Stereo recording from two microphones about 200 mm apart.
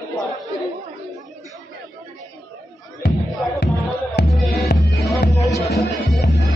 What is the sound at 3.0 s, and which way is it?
Music, 55° left (ahead or behind).